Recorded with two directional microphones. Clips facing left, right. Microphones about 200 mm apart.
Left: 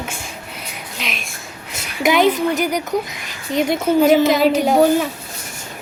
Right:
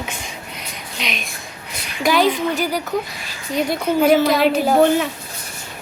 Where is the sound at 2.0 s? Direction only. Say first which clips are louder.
Left 2 dB; 20° left (ahead or behind).